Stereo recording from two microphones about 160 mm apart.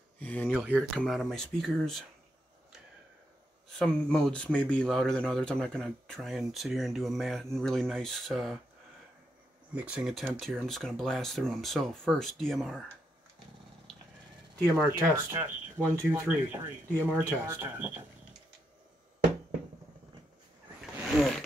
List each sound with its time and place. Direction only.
0.2 s a sound: 10° left (ahead or behind)
0.5 s speech: centre (ahead or behind)
3.6 s speech: 5° left (ahead or behind)
9.8 s speech: 5° right (ahead or behind)
13.9 s a sound: centre (ahead or behind)
14.9 s speech: 15° right (ahead or behind)